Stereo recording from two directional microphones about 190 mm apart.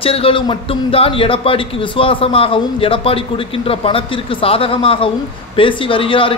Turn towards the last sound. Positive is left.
turn(degrees=30)  # may be behind; listen again after turning